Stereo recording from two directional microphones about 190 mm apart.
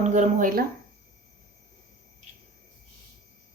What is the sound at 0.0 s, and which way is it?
Speech, 40° right (ahead or behind).